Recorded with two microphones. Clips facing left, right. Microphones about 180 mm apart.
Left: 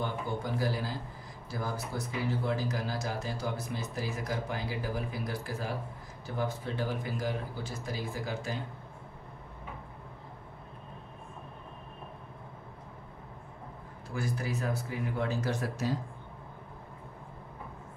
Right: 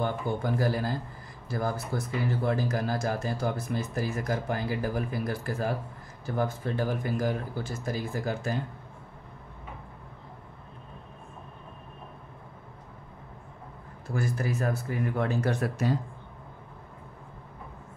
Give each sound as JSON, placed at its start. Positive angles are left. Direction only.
{"t": 0.0, "sound": "speech", "side_deg": -55}
{"t": 14.1, "sound": "speech", "side_deg": -50}